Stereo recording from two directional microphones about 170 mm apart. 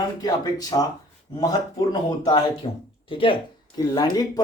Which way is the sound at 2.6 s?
35° left (ahead or behind).